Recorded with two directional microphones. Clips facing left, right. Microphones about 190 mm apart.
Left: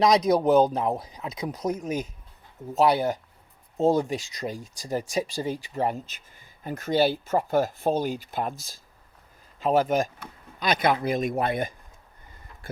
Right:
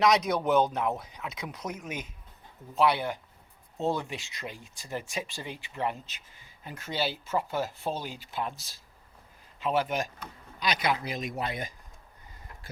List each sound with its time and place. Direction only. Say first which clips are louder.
0.0 s speech: left 5 dB; 35° left (ahead or behind); by 11.7 s 55° left (ahead or behind)